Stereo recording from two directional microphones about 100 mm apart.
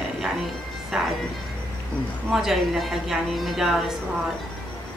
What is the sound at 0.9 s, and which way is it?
Speech, 5° right (ahead or behind).